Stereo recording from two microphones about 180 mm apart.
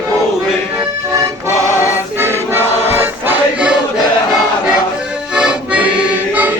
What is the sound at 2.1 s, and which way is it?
Choir, 15° right (ahead or behind).